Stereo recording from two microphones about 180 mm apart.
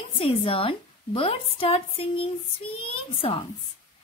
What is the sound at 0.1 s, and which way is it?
A woman's voice, 30° left (ahead or behind).